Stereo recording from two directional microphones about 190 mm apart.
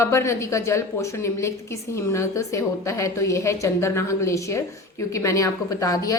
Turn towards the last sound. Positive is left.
turn(degrees=20)  # may be behind; listen again after turning